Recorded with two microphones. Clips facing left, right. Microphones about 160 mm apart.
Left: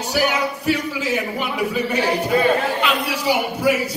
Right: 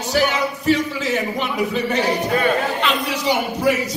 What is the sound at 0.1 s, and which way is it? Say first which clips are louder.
A man's voice: right 1 dB; 10° left (ahead or behind).